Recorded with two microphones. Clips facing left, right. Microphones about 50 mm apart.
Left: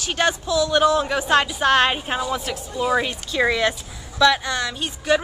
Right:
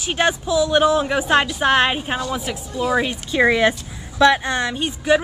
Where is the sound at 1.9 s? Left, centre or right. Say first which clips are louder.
Right 1 dB; centre.